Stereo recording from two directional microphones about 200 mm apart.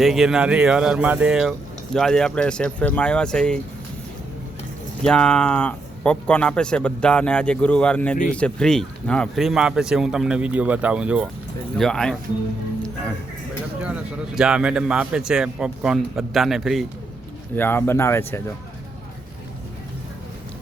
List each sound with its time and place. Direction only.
0.0 s speech: centre (ahead or behind)
5.0 s speech: 5° left (ahead or behind)
13.8 s speech: 5° right (ahead or behind)
17.5 s speech: 10° left (ahead or behind)